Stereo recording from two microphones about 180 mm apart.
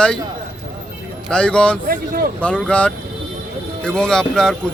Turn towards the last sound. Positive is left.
turn(degrees=5)  # may be behind; listen again after turning